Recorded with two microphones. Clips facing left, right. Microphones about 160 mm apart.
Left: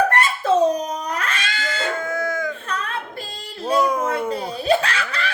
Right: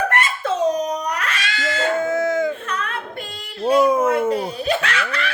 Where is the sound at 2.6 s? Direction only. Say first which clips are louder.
Right 1 dB; 35° left (ahead or behind).